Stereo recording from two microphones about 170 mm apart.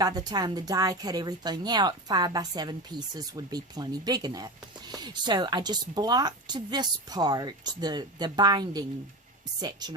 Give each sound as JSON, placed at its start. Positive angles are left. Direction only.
{"t": 0.0, "sound": "speech", "side_deg": -25}